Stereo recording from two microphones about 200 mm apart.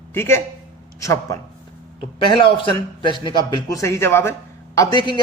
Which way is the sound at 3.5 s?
15° left (ahead or behind).